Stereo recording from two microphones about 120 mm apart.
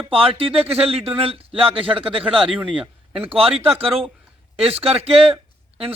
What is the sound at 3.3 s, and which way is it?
A man's voice, 50° right (ahead or behind).